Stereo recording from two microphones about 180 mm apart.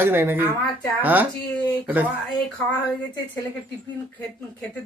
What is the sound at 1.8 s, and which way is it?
Speech, 10° right (ahead or behind).